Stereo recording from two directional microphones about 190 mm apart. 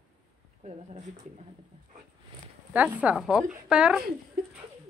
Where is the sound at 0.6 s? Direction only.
40° right (ahead or behind).